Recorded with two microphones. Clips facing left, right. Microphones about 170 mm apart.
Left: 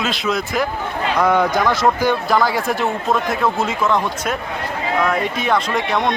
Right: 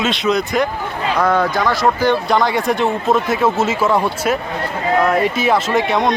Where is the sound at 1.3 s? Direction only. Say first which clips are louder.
Left 1 dB; 15° left (ahead or behind).